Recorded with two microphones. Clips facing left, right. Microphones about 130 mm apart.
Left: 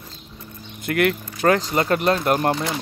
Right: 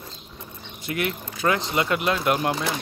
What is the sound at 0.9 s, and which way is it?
Speech, 60° left (ahead or behind).